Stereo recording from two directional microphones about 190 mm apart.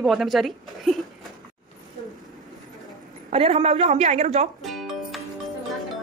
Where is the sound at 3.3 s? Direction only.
30° right (ahead or behind).